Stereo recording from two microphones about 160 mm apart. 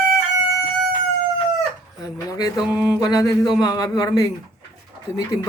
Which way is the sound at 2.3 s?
25° left (ahead or behind).